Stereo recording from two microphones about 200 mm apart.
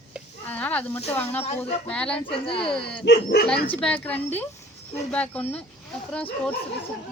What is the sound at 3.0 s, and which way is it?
Speech, 55° left (ahead or behind).